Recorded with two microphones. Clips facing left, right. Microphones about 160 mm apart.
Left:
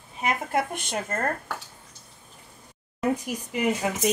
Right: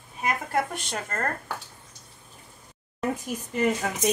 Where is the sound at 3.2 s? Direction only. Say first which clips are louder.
Right 1 dB; 10° left (ahead or behind).